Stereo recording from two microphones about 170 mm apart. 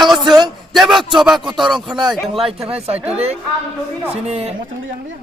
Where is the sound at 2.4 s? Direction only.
35° right (ahead or behind).